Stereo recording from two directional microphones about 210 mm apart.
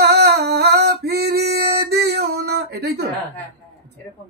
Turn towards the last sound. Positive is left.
turn(degrees=-50)  # may be behind; listen again after turning